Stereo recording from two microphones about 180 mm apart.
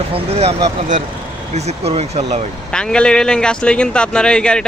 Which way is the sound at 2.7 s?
5° left (ahead or behind).